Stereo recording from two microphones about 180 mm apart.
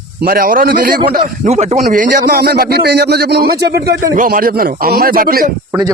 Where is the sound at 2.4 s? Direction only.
65° right (ahead or behind).